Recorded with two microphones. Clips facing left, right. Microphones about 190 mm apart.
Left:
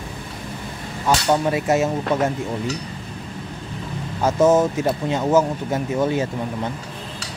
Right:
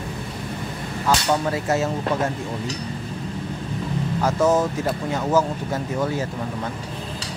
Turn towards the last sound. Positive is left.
turn(degrees=20)  # may be behind; listen again after turning